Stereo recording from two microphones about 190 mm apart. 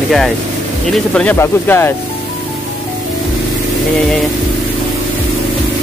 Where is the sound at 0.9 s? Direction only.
5° left (ahead or behind).